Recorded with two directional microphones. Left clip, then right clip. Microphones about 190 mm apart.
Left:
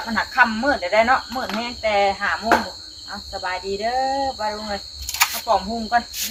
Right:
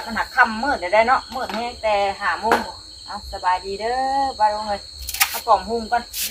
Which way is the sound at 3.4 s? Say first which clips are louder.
Right 3 dB; 5° right (ahead or behind).